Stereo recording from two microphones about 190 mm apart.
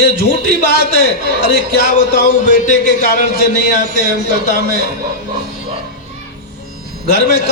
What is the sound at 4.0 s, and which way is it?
Speech, 55° right (ahead or behind).